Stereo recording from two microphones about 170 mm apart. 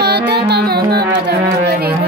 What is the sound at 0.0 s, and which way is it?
Music, 75° right (ahead or behind).